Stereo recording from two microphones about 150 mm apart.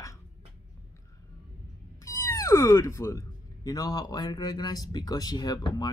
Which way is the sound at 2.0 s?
20° left (ahead or behind).